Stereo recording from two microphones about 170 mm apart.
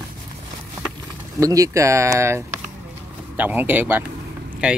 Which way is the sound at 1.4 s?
20° right (ahead or behind).